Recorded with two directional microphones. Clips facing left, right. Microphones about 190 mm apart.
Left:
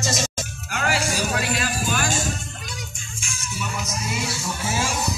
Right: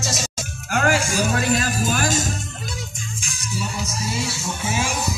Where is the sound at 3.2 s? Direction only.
35° right (ahead or behind).